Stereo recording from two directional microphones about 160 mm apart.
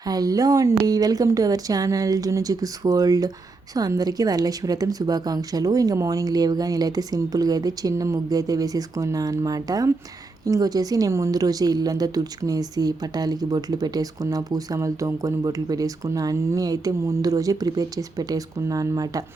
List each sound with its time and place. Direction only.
0.0 s a woman's voice: 25° right (ahead or behind)